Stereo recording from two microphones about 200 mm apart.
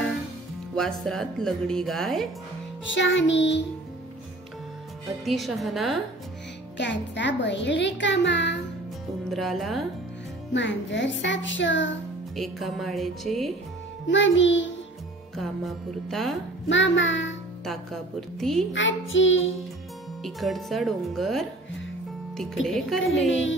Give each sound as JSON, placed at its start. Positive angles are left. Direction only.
{"t": 0.7, "sound": "speech", "side_deg": 0}
{"t": 2.8, "sound": "a child's voice", "side_deg": 70}
{"t": 5.2, "sound": "speech", "side_deg": 0}
{"t": 6.8, "sound": "a child's voice", "side_deg": 65}
{"t": 9.3, "sound": "speech", "side_deg": 0}
{"t": 10.5, "sound": "a child's voice", "side_deg": 65}
{"t": 12.4, "sound": "speech", "side_deg": 0}
{"t": 14.0, "sound": "music", "side_deg": 65}
{"t": 15.3, "sound": "speech", "side_deg": 0}
{"t": 16.6, "sound": "music", "side_deg": 65}
{"t": 17.6, "sound": "speech", "side_deg": 0}
{"t": 18.7, "sound": "music", "side_deg": 70}
{"t": 20.2, "sound": "speech", "side_deg": 0}